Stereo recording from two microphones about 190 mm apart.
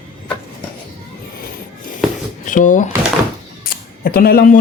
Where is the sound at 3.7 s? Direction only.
50° left (ahead or behind).